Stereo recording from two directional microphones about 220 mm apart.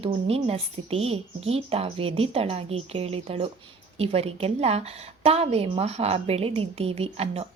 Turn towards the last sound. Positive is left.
turn(degrees=-25)  # may be behind; listen again after turning